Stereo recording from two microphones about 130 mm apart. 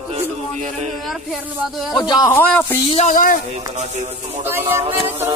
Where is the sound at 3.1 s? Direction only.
90° left.